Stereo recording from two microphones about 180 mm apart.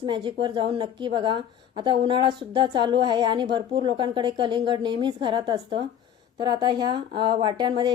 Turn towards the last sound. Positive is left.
turn(degrees=-25)  # may be behind; listen again after turning